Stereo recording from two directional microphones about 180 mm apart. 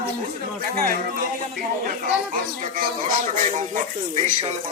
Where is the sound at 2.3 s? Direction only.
45° right (ahead or behind).